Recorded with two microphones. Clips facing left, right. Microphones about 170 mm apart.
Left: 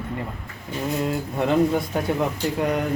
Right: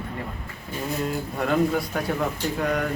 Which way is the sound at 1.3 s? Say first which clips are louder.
Left 3 dB; 20° left (ahead or behind).